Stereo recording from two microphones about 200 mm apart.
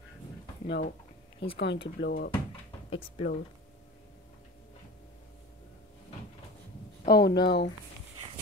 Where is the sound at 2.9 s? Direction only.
30° left (ahead or behind).